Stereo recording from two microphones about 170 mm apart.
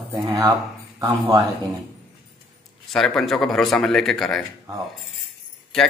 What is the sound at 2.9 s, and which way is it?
Speech, 5° left (ahead or behind).